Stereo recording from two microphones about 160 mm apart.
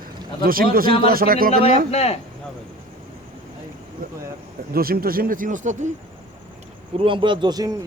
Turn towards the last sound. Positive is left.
turn(degrees=-25)  # may be behind; listen again after turning